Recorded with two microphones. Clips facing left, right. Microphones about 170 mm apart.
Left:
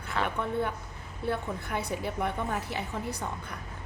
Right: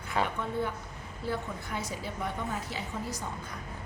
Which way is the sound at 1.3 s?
60° left (ahead or behind).